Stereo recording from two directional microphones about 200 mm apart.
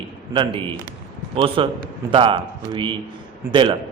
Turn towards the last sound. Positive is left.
turn(degrees=-25)  # may be behind; listen again after turning